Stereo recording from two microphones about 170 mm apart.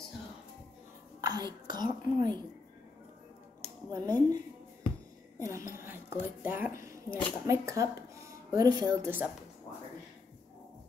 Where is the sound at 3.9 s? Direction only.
20° right (ahead or behind).